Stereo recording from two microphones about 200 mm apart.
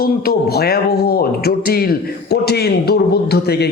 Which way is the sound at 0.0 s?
50° left (ahead or behind).